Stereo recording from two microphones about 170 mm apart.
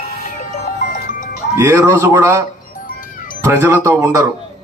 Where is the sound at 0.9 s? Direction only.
50° left (ahead or behind).